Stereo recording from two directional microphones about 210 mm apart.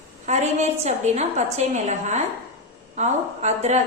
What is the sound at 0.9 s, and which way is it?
A woman's voice, 30° right (ahead or behind).